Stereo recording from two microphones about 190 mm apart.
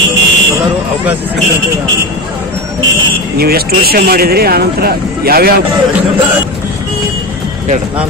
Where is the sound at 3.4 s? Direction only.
55° right (ahead or behind).